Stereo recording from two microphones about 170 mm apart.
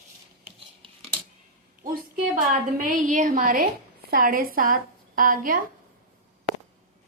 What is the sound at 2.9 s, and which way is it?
A woman's voice, 50° right (ahead or behind).